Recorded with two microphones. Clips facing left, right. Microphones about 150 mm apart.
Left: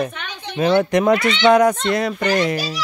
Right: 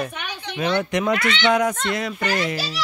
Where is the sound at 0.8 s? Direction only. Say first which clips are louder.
Left 6 dB; 45° left (ahead or behind).